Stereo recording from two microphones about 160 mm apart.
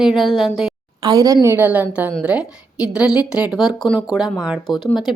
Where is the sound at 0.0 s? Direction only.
Centre (ahead or behind).